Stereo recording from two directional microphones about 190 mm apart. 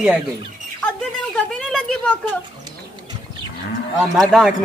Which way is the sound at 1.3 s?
Centre (ahead or behind).